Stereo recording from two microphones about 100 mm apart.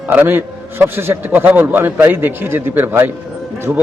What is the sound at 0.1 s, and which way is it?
A man's voice, 20° right (ahead or behind).